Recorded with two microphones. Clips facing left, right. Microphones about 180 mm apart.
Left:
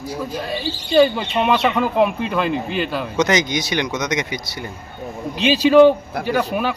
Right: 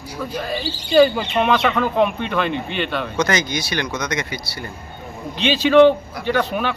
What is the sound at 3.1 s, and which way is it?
Speech, 20° left (ahead or behind).